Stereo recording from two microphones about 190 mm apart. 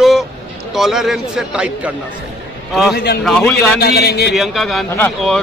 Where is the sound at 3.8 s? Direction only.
55° left (ahead or behind).